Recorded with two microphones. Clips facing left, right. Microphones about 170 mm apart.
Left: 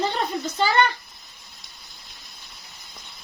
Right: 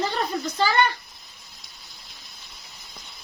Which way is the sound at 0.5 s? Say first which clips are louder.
Left 1 dB; 25° left (ahead or behind).